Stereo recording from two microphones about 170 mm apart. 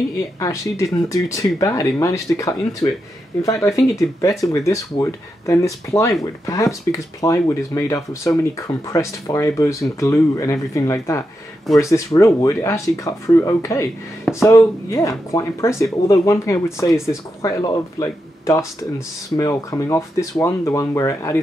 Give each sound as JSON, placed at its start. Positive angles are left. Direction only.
{"t": 0.4, "sound": "speech", "side_deg": 15}
{"t": 4.2, "sound": "speech", "side_deg": 20}